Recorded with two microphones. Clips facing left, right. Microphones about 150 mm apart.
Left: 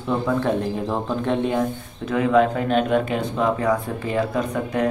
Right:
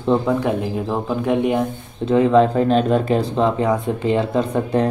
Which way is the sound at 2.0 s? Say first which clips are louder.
Right 4 dB; 30° right (ahead or behind).